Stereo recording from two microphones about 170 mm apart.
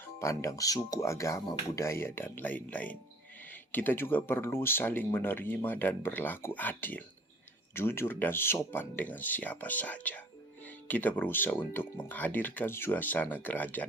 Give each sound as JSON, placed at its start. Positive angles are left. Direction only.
{"t": 0.2, "sound": "speech", "side_deg": 20}